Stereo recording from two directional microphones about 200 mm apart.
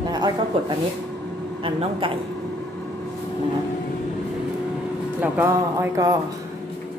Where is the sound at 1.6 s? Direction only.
25° right (ahead or behind).